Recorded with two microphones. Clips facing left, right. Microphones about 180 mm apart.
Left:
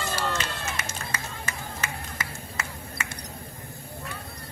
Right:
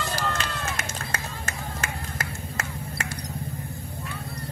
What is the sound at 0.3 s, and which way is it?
Run, 55° right (ahead or behind).